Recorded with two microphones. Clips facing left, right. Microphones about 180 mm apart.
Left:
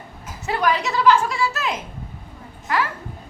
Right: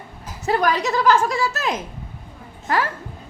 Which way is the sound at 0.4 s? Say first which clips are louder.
Right 2 dB; 40° right (ahead or behind).